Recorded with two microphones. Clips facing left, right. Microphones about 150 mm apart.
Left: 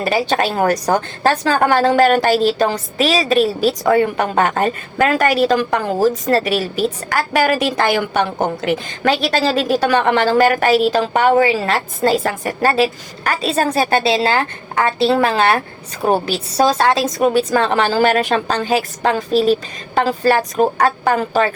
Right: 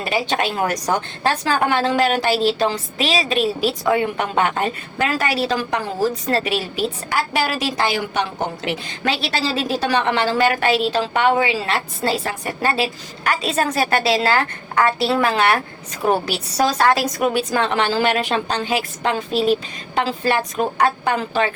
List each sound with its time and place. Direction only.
0.0 s a woman's voice: 40° left (ahead or behind); by 17.1 s 25° left (ahead or behind)
17.2 s a woman's voice: 35° left (ahead or behind)